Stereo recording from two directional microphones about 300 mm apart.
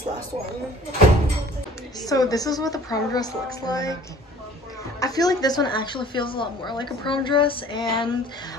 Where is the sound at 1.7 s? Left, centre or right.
Centre.